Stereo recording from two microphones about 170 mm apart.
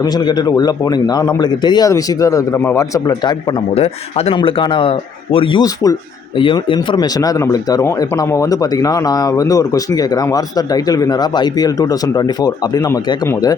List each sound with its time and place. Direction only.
0.0 s a man's voice: 25° left (ahead or behind)
3.8 s a man's voice: 35° left (ahead or behind); by 13.5 s 20° left (ahead or behind)